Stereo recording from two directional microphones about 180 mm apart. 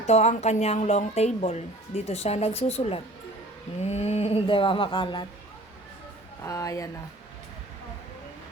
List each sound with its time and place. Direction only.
0.0 s a woman's voice: 40° left (ahead or behind)
6.4 s speech: 20° left (ahead or behind)